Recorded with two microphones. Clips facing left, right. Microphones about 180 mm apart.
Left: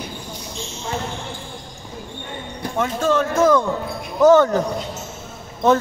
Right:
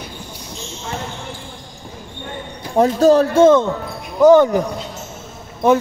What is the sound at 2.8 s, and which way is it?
Speech, 35° right (ahead or behind).